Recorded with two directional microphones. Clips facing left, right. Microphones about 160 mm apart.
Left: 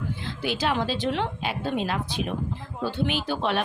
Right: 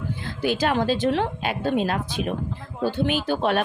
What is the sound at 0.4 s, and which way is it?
A woman's voice, 50° right (ahead or behind).